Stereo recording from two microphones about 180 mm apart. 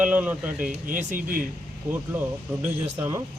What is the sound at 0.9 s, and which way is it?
Speech, 45° right (ahead or behind).